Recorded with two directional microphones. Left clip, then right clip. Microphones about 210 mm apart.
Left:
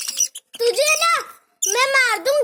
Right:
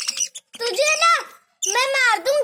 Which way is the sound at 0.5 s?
35° left (ahead or behind).